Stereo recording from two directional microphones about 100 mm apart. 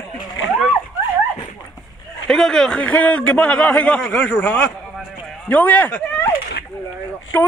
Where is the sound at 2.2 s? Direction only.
5° left (ahead or behind).